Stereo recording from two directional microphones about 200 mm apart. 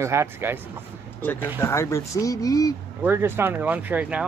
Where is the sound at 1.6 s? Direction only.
15° left (ahead or behind).